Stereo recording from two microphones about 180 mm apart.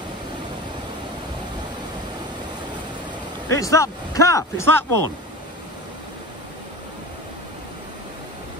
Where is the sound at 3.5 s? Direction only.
15° left (ahead or behind).